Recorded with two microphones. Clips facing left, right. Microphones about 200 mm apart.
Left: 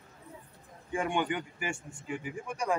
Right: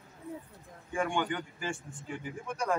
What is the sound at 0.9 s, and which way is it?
Speech, 20° left (ahead or behind).